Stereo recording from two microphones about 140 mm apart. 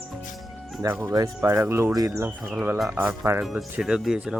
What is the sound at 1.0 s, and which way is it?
Speech, 20° right (ahead or behind).